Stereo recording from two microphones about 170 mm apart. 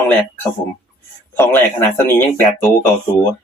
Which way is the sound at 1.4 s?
10° left (ahead or behind).